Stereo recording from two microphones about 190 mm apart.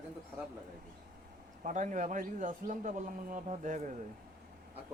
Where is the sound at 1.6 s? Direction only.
40° right (ahead or behind).